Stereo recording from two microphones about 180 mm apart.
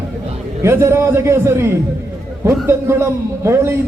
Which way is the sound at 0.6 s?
15° right (ahead or behind).